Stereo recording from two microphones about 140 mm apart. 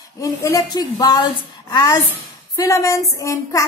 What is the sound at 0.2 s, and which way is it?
Female singing, 25° left (ahead or behind).